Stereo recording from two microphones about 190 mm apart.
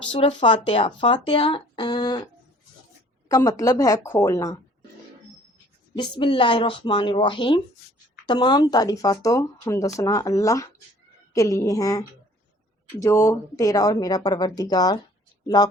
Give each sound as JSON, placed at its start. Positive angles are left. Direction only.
{"t": 0.1, "sound": "speech", "side_deg": 30}
{"t": 6.0, "sound": "speech", "side_deg": 25}